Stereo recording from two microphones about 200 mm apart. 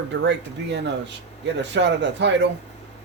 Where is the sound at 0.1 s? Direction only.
65° right (ahead or behind).